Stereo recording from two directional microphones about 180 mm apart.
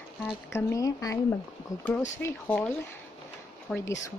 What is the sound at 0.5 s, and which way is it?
Speech, 20° left (ahead or behind).